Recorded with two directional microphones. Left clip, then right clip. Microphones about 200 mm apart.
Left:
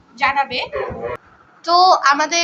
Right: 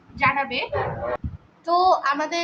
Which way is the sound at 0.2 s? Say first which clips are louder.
Left 4 dB; 10° left (ahead or behind).